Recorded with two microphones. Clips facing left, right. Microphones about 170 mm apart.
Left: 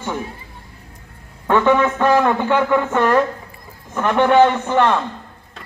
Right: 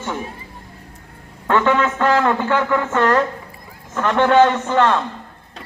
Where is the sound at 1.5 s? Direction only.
15° left (ahead or behind).